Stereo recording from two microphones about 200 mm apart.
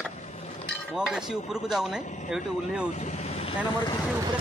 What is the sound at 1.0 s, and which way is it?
Dishes, centre (ahead or behind).